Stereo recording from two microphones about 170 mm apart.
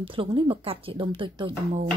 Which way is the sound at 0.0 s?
30° right (ahead or behind).